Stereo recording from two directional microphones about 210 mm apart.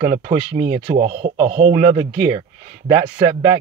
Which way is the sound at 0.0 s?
30° right (ahead or behind).